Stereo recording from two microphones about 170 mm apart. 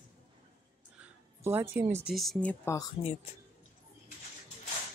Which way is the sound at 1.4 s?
10° right (ahead or behind).